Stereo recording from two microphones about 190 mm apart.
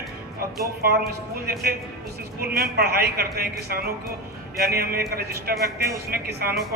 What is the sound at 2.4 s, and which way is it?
Speech, 55° right (ahead or behind).